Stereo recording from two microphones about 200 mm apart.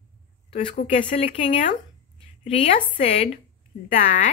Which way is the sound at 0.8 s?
30° left (ahead or behind).